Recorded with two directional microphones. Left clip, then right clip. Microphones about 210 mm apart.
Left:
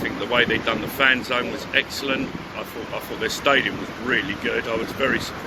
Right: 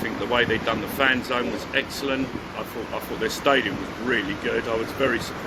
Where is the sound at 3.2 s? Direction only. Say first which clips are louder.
Left 2 dB; 20° right (ahead or behind).